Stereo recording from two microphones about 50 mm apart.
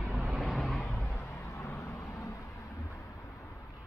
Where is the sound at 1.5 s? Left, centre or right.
Left.